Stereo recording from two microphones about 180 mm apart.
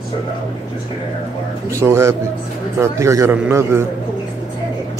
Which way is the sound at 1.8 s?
15° right (ahead or behind).